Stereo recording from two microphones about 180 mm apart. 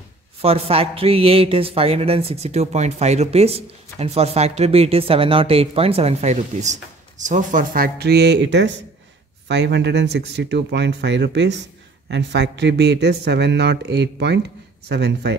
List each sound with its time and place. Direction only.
0.4 s a man's voice: 35° right (ahead or behind); by 15.3 s 70° right (ahead or behind)